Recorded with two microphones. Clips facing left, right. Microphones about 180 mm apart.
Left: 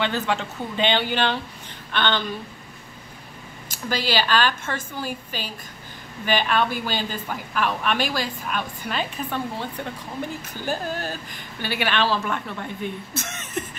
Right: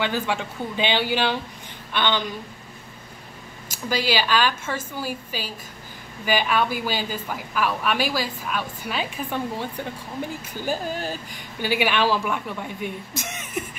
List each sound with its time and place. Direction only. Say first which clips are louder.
0.0 s a woman's voice: left 1 dB; 10° right (ahead or behind)
3.9 s a woman's voice: even; 10° right (ahead or behind)